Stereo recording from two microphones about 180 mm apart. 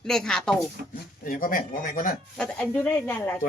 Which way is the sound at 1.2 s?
50° left (ahead or behind).